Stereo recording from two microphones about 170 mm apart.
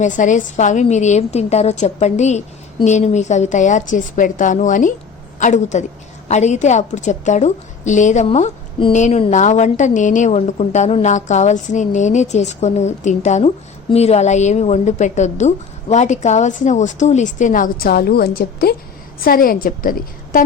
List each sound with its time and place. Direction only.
0.0 s a woman's voice: 45° left (ahead or behind)